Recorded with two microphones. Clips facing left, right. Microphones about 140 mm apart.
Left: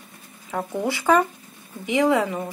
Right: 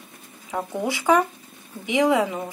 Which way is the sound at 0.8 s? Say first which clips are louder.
Left 1 dB; 15° right (ahead or behind).